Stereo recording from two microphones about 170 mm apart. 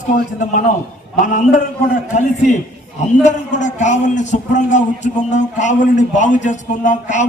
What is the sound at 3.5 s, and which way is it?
A man's voice, 45° left (ahead or behind).